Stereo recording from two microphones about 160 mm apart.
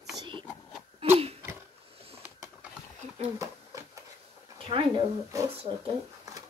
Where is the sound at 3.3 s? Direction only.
20° right (ahead or behind).